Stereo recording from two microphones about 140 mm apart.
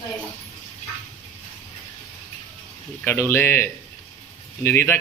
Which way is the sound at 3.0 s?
15° left (ahead or behind).